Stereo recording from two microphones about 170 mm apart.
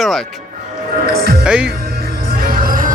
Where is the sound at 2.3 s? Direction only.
55° right (ahead or behind).